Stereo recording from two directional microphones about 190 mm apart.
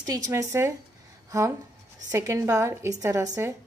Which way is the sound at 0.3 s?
15° right (ahead or behind).